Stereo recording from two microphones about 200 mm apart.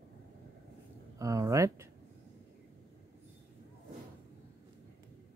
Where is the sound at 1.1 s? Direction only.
15° right (ahead or behind).